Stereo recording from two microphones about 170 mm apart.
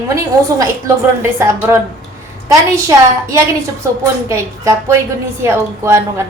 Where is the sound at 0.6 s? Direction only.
15° right (ahead or behind).